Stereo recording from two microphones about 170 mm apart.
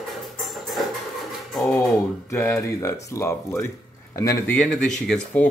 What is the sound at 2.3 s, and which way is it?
Speech, 10° left (ahead or behind).